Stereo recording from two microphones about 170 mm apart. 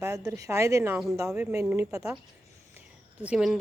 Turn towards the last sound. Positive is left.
turn(degrees=0)  # may be behind; listen again after turning